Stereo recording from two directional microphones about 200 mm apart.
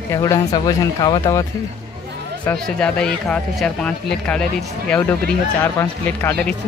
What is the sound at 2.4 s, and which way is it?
Speech, 5° left (ahead or behind).